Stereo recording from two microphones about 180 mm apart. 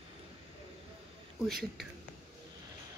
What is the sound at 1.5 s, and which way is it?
Speech, centre (ahead or behind).